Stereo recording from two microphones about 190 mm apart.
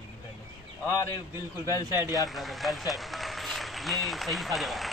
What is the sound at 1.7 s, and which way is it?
Speech, 20° left (ahead or behind).